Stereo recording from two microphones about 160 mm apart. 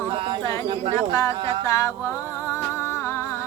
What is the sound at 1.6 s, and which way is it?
Music, 20° left (ahead or behind).